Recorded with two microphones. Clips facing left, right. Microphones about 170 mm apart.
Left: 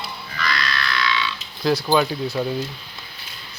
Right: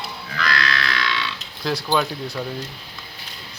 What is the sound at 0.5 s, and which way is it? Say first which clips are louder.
Music: right 1 dB; 75° right (ahead or behind).